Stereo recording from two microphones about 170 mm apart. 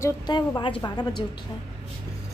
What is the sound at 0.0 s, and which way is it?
A woman's voice, 25° left (ahead or behind).